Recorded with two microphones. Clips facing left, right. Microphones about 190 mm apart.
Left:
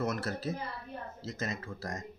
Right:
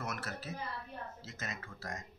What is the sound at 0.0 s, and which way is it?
Speech, 35° left (ahead or behind).